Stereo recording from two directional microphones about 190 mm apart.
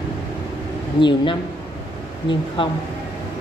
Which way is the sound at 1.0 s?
25° left (ahead or behind).